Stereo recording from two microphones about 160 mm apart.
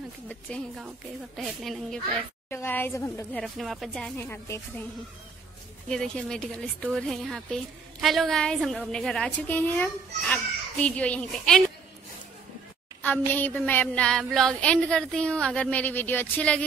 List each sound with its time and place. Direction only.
0.5 s speech: 5° left (ahead or behind)
2.5 s speech: 15° left (ahead or behind)
3.3 s speech: centre (ahead or behind)
4.2 s speech: 15° left (ahead or behind)
5.9 s speech: 5° left (ahead or behind)
13.3 s speech: 10° left (ahead or behind)